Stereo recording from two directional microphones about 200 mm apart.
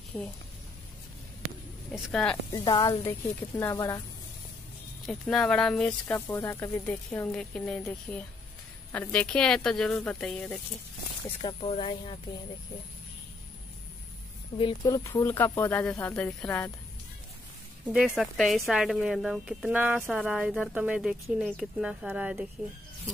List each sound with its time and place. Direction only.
0.1 s speech: 5° left (ahead or behind)
1.9 s speech: centre (ahead or behind)
2.5 s speech: 20° left (ahead or behind)
5.0 s speech: centre (ahead or behind)
11.4 s speech: 25° left (ahead or behind)
14.6 s speech: 20° left (ahead or behind)
17.8 s speech: 5° right (ahead or behind)